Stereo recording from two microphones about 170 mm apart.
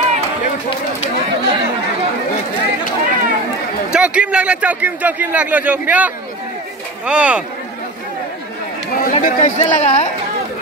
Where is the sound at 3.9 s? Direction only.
5° right (ahead or behind).